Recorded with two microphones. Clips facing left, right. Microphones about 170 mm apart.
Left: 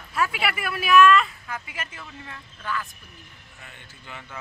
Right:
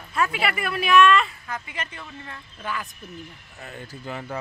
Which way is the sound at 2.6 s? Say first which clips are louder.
Even; 15° right (ahead or behind).